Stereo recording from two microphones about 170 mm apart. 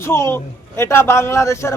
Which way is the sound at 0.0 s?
15° left (ahead or behind).